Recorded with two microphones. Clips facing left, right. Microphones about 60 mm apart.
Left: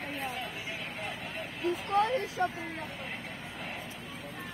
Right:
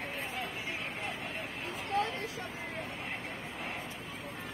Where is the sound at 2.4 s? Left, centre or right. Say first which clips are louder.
Left 12 dB; left.